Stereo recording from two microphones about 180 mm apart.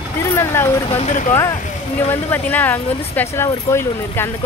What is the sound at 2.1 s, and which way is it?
Speech, 10° left (ahead or behind).